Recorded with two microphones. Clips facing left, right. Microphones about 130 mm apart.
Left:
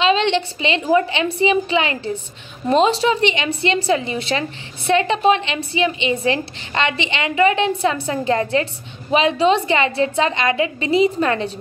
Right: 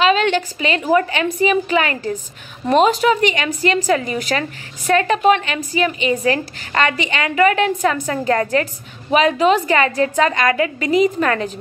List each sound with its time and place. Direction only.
0.0 s a woman's voice: 25° left (ahead or behind)